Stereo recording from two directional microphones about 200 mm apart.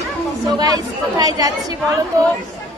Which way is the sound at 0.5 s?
20° right (ahead or behind).